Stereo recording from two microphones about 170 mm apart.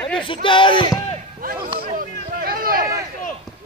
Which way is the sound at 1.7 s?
55° right (ahead or behind).